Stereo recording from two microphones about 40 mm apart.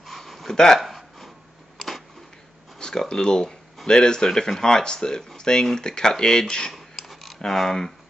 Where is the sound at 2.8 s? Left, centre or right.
Centre.